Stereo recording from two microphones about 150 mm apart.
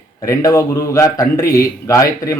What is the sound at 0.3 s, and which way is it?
Speech, 20° left (ahead or behind).